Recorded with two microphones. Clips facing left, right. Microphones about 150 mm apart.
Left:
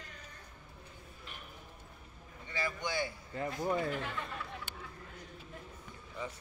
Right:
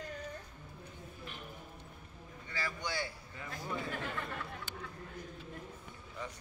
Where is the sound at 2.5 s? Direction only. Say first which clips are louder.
Left 3 dB; 20° left (ahead or behind).